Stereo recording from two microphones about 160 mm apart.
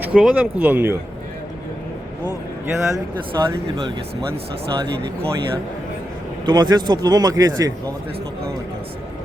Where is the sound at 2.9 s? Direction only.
20° right (ahead or behind).